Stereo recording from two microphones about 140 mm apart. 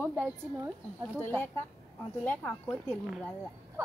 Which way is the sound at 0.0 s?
10° right (ahead or behind).